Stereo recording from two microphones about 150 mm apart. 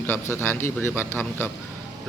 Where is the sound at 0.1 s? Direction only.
15° left (ahead or behind).